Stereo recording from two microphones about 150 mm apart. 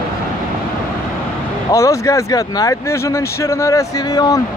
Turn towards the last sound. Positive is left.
turn(degrees=25)  # may be behind; listen again after turning